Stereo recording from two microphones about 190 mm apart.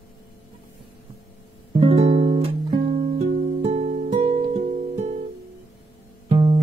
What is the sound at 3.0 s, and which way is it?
Music, 35° right (ahead or behind).